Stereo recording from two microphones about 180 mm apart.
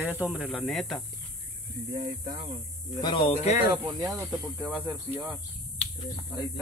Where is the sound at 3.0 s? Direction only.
25° left (ahead or behind).